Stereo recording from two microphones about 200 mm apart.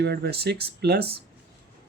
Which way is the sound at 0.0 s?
55° right (ahead or behind).